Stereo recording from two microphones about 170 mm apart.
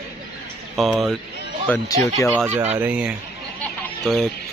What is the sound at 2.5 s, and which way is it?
Speech, 40° right (ahead or behind).